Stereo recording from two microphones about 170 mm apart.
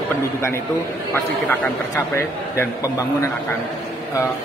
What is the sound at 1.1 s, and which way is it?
A man's voice, 15° left (ahead or behind).